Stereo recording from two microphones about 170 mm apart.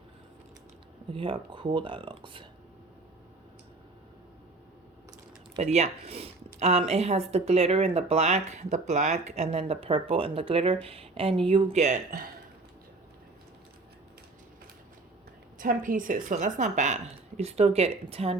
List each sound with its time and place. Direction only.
1.1 s speech: 30° right (ahead or behind)
5.5 s speech: 40° right (ahead or behind)
15.5 s a woman's voice: 55° right (ahead or behind); by 18.3 s 35° right (ahead or behind)